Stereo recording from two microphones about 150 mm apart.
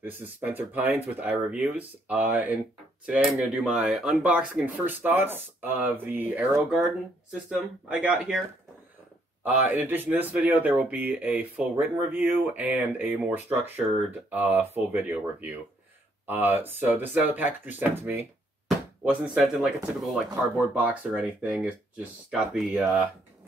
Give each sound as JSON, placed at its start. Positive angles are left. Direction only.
{"t": 0.0, "sound": "speech", "side_deg": -10}
{"t": 9.5, "sound": "speech", "side_deg": -10}